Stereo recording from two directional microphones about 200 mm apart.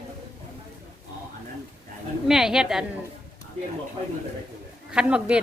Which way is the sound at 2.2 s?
Centre (ahead or behind).